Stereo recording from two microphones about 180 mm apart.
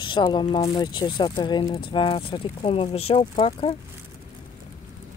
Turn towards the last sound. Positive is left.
turn(degrees=30)  # may be behind; listen again after turning